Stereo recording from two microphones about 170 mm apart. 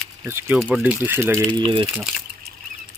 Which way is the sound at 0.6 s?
10° right (ahead or behind).